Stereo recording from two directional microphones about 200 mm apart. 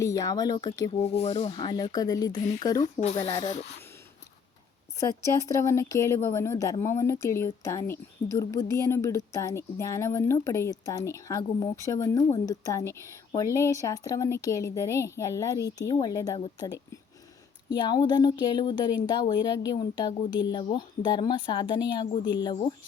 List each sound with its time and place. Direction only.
0.0 s speech: 15° left (ahead or behind)
1.2 s speech: 30° left (ahead or behind)
2.8 s speech: 35° left (ahead or behind)
3.2 s speech: 15° left (ahead or behind)
4.9 s speech: 15° left (ahead or behind)